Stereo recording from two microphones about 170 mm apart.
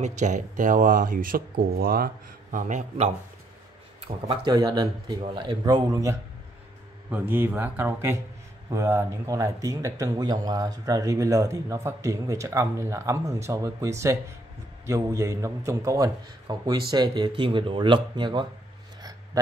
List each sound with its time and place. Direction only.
0.0 s speech: 45° right (ahead or behind); by 2.0 s 60° right (ahead or behind)
2.5 s speech: 45° right (ahead or behind)
4.3 s a man's voice: 20° right (ahead or behind)